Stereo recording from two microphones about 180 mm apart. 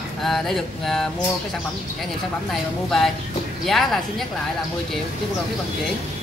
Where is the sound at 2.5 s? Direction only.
Centre (ahead or behind).